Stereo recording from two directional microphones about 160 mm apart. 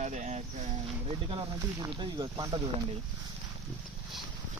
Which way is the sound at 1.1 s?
30° right (ahead or behind).